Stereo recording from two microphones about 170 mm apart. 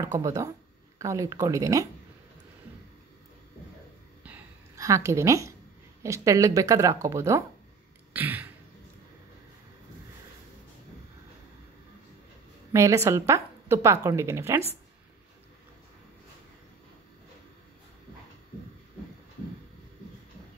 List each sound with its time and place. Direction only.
0.0 s speech: 20° right (ahead or behind)
4.7 s a woman's voice: 20° right (ahead or behind)
8.1 s throat clearing: 10° right (ahead or behind)
12.7 s a woman's voice: 20° right (ahead or behind)